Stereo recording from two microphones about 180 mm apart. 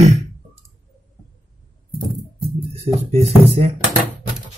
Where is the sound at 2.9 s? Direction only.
35° right (ahead or behind).